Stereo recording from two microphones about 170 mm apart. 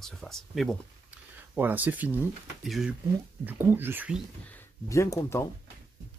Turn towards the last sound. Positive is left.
turn(degrees=15)  # may be behind; listen again after turning